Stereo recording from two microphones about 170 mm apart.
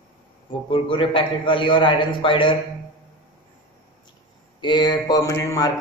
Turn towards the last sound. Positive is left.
turn(degrees=20)  # may be behind; listen again after turning